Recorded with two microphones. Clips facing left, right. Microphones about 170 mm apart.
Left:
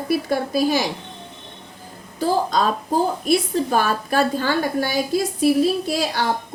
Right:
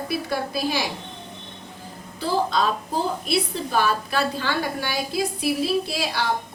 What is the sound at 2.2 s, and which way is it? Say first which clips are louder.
A woman's voice: left 3 dB; 45° left (ahead or behind).